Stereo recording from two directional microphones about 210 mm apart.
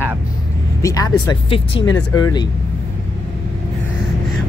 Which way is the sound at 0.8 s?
15° left (ahead or behind).